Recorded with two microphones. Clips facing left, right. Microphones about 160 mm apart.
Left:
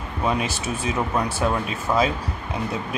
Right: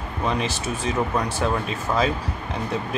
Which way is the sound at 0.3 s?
10° left (ahead or behind).